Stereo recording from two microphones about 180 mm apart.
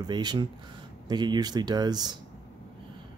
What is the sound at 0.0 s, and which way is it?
Speech, 25° right (ahead or behind).